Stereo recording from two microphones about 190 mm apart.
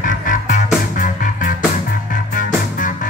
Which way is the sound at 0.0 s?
45° left (ahead or behind).